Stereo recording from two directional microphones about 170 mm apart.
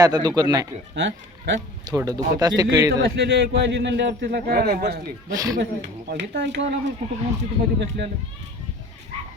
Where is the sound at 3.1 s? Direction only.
85° right.